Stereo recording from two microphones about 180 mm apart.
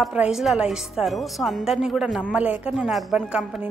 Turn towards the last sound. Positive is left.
turn(degrees=-5)  # may be behind; listen again after turning